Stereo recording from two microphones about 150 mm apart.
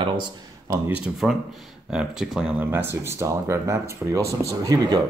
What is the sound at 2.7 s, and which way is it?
Speech, 15° right (ahead or behind).